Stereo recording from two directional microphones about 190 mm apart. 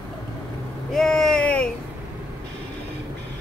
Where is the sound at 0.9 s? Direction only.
Centre (ahead or behind).